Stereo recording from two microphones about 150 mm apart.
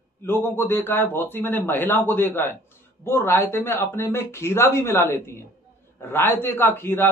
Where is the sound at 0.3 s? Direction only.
15° left (ahead or behind).